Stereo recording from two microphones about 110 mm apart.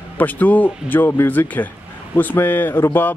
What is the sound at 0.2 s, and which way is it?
Speech, 15° left (ahead or behind).